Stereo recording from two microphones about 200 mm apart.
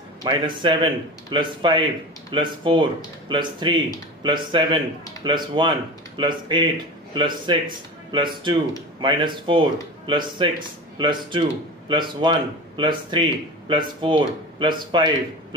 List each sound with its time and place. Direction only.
0.2 s speech: 25° right (ahead or behind)